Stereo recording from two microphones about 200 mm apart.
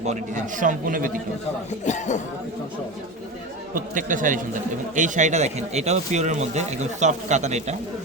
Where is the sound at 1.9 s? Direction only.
35° left (ahead or behind).